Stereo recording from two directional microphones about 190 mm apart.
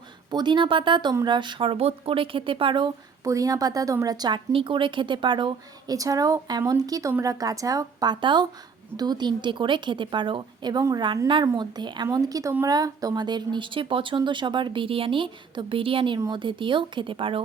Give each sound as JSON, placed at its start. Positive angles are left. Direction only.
{"t": 0.3, "sound": "a woman's voice", "side_deg": -25}